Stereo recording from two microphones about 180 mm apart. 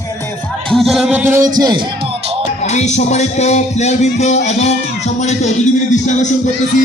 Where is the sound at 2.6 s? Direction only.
40° left (ahead or behind).